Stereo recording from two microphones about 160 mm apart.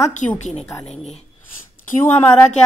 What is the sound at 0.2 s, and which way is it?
Speech, 50° left (ahead or behind).